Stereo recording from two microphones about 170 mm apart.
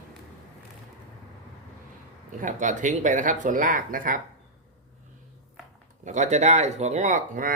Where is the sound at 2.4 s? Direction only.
45° right (ahead or behind).